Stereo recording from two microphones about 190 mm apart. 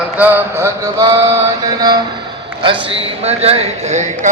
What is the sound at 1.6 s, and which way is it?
Mantra, 20° right (ahead or behind).